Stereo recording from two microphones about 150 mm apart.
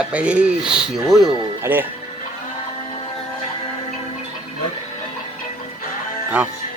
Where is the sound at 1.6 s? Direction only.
15° right (ahead or behind).